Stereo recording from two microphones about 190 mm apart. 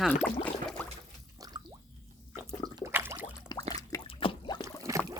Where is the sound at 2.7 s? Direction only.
15° right (ahead or behind).